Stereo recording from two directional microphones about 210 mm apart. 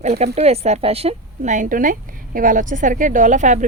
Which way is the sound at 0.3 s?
30° right (ahead or behind).